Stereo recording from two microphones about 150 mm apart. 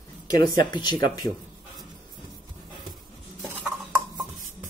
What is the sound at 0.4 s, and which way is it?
Speech, 30° left (ahead or behind).